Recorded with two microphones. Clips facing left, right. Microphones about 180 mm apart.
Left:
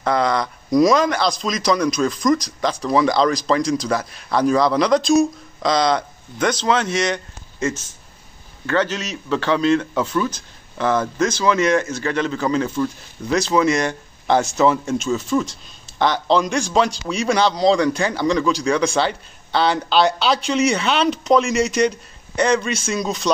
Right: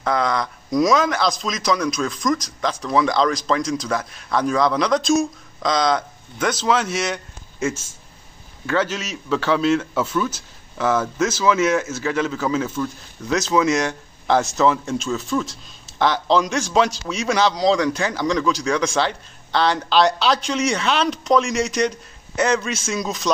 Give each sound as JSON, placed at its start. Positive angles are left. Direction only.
{"t": 0.0, "sound": "speech", "side_deg": 0}
{"t": 8.6, "sound": "speech", "side_deg": -5}